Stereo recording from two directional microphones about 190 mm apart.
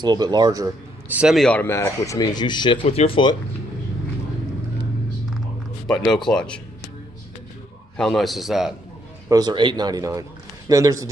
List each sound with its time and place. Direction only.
0.0 s a man's voice: 20° right (ahead or behind); by 3.3 s 25° left (ahead or behind)
5.9 s speech: 5° left (ahead or behind)
8.0 s speech: centre (ahead or behind)
9.3 s a man's voice: 20° right (ahead or behind)